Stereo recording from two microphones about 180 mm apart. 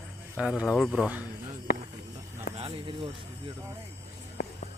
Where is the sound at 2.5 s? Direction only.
30° right (ahead or behind).